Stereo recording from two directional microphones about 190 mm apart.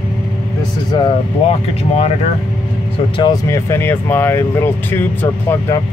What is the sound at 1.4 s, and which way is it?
Speech, 35° left (ahead or behind).